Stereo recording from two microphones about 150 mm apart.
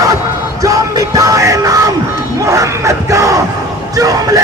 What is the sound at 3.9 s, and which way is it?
Speech, 20° right (ahead or behind).